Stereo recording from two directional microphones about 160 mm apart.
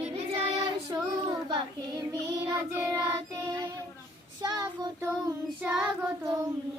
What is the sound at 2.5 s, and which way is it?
Child singing, 20° right (ahead or behind).